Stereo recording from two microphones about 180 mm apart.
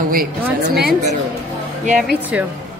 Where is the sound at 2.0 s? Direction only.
5° right (ahead or behind).